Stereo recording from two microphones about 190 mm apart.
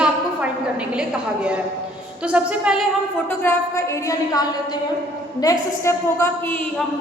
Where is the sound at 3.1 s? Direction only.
10° left (ahead or behind).